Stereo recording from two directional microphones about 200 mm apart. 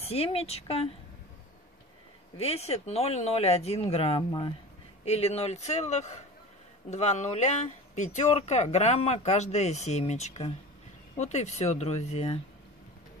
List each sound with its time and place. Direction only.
0.0 s speech: 30° left (ahead or behind)
2.3 s speech: 30° left (ahead or behind)